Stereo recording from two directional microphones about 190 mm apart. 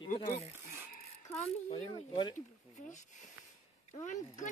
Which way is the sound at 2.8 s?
40° left (ahead or behind).